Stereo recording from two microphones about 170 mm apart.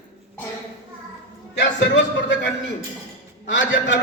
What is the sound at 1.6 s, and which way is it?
Speech, 90° left.